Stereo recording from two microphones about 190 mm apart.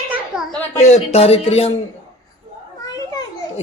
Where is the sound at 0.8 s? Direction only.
35° left (ahead or behind).